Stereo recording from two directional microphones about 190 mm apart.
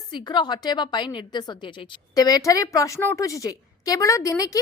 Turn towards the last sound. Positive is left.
turn(degrees=15)  # may be behind; listen again after turning